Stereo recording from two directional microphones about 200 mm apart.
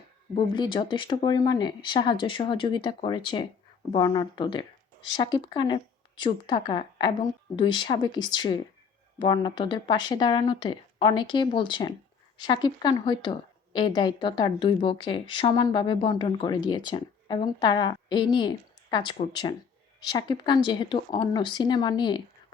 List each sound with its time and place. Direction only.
0.3 s a woman's voice: 25° left (ahead or behind)